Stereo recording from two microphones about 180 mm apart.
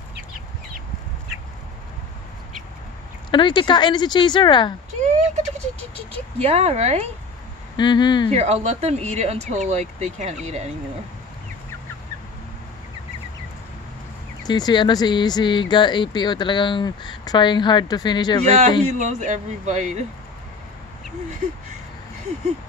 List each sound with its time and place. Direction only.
3.3 s speech: 25° left (ahead or behind)
5.0 s a sound: 40° right (ahead or behind)
6.4 s speech: 35° right (ahead or behind)
7.7 s speech: 25° left (ahead or behind)
8.3 s speech: 40° right (ahead or behind)
14.4 s speech: 25° left (ahead or behind)
18.9 s speech: 40° right (ahead or behind)